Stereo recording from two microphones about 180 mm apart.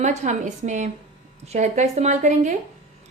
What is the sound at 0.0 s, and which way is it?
A woman's voice, 40° right (ahead or behind).